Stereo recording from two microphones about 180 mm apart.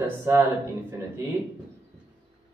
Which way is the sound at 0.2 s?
15° right (ahead or behind).